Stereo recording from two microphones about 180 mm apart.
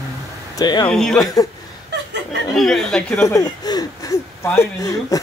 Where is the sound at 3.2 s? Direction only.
20° left (ahead or behind).